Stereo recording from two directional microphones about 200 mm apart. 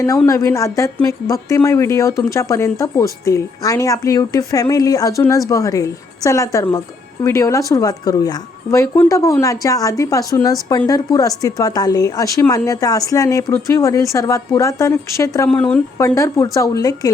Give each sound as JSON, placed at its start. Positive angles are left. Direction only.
{"t": 0.3, "sound": "a woman's voice", "side_deg": 15}